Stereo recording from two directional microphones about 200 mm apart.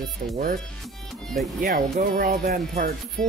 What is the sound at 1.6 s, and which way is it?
Music, 45° right (ahead or behind).